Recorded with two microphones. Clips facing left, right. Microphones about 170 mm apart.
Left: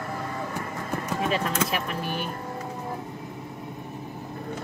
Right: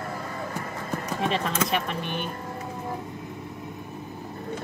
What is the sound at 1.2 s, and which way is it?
Speech, 5° left (ahead or behind).